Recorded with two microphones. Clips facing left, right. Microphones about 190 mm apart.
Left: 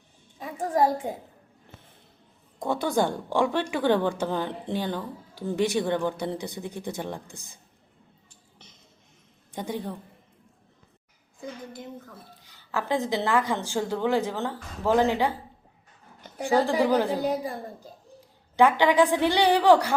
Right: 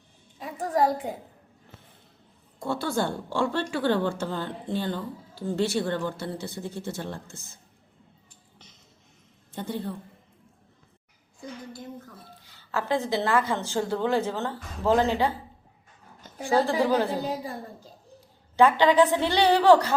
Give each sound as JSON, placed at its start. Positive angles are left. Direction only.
{"t": 0.4, "sound": "a woman's voice", "side_deg": 20}
{"t": 2.6, "sound": "a woman's voice", "side_deg": 15}
{"t": 9.5, "sound": "a woman's voice", "side_deg": 15}
{"t": 12.5, "sound": "a woman's voice", "side_deg": 15}
{"t": 16.4, "sound": "a woman's voice", "side_deg": 15}